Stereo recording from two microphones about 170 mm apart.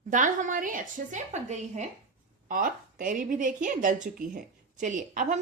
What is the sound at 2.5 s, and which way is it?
Speech, 55° right (ahead or behind).